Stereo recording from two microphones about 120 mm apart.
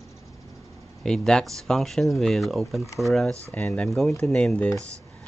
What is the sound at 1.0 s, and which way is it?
Speech, 5° left (ahead or behind).